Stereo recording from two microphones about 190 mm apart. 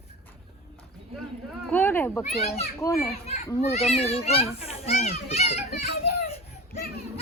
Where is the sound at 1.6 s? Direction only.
10° left (ahead or behind).